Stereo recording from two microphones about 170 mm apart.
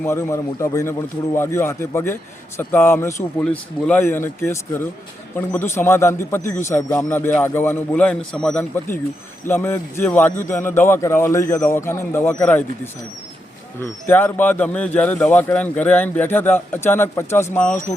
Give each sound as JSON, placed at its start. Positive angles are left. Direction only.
{"t": 0.0, "sound": "a man's voice", "side_deg": 15}